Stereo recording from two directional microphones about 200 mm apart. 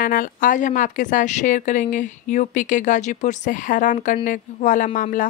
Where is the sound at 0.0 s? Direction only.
45° left (ahead or behind).